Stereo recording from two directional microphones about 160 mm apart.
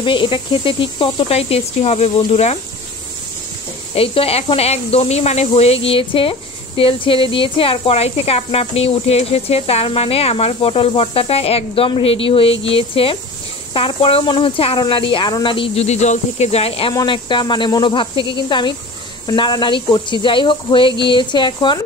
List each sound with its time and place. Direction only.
0.0 s speech: 30° left (ahead or behind)
3.9 s speech: 35° left (ahead or behind)